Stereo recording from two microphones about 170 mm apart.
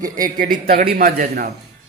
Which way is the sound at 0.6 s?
55° right (ahead or behind).